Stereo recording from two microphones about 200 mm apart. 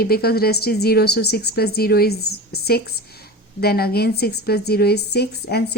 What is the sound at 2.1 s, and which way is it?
Speech, 90° left.